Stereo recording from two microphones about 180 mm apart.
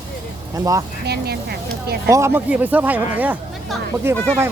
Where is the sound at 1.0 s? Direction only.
65° right (ahead or behind).